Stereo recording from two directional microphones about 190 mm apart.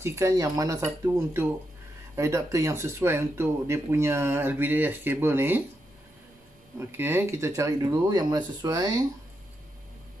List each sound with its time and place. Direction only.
0.0 s speech: 15° right (ahead or behind)
6.8 s speech: 10° right (ahead or behind)